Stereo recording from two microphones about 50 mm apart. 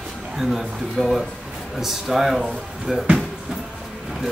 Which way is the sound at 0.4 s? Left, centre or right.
Centre.